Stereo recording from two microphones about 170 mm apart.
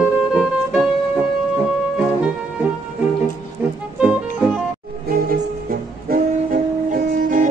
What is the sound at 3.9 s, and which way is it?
Music, 5° right (ahead or behind).